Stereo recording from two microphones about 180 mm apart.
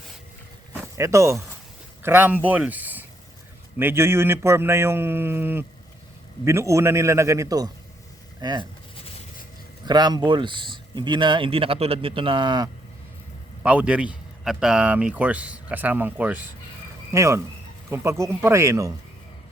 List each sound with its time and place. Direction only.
0.7 s a sound: 15° right (ahead or behind)
2.0 s speech: 10° right (ahead or behind)
2.5 s a sound: 10° right (ahead or behind)
3.8 s speech: 15° right (ahead or behind)
9.8 s speech: 25° right (ahead or behind)
13.6 s speech: 5° right (ahead or behind)